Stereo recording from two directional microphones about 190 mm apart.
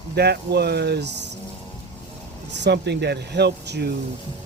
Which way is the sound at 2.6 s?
60° right (ahead or behind).